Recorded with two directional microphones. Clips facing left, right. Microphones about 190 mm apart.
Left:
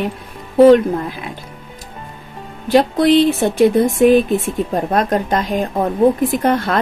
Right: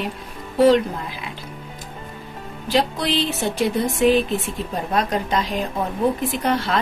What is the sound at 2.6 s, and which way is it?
Speech, 50° left (ahead or behind).